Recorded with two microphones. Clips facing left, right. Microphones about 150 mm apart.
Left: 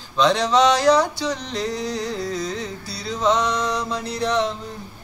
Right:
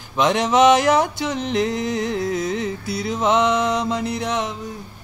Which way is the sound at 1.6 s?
20° right (ahead or behind).